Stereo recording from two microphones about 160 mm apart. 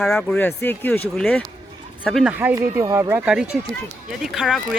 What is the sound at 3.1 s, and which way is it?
A woman's voice, 5° right (ahead or behind).